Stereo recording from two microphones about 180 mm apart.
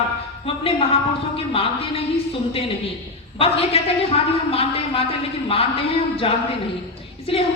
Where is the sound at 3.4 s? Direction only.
35° left (ahead or behind).